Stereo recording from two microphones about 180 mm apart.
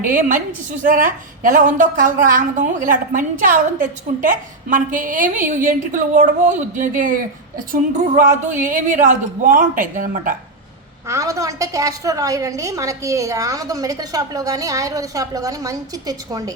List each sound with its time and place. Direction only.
0.0 s a woman's voice: 50° right (ahead or behind)
11.1 s a woman's voice: 15° right (ahead or behind)